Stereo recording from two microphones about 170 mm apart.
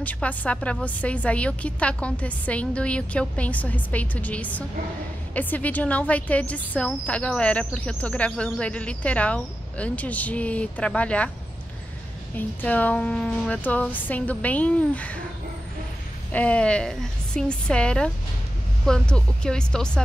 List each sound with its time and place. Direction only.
0.0 s speech: 10° left (ahead or behind)
12.4 s speech: 10° left (ahead or behind)
16.3 s a woman's voice: 10° left (ahead or behind)